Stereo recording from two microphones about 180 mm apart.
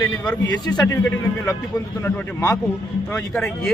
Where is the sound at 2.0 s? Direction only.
15° left (ahead or behind).